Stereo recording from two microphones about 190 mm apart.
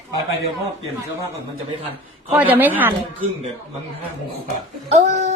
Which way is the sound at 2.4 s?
10° right (ahead or behind).